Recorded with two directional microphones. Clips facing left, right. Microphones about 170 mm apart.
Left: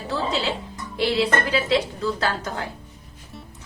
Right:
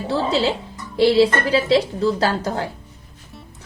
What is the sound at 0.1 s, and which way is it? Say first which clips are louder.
A woman's voice: right 5 dB; 35° right (ahead or behind).